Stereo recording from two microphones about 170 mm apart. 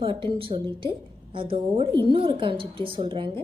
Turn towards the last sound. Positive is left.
turn(degrees=-30)  # may be behind; listen again after turning